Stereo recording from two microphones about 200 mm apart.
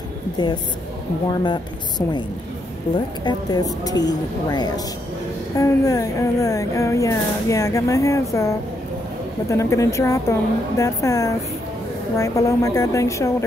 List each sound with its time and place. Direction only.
1.3 s a woman's voice: 20° left (ahead or behind)
3.3 s a woman's voice: 20° left (ahead or behind)